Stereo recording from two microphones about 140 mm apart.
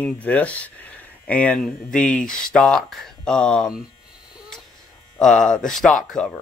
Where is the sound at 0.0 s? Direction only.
10° left (ahead or behind).